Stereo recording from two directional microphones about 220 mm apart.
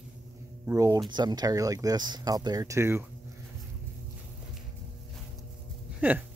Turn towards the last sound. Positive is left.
turn(degrees=-5)  # may be behind; listen again after turning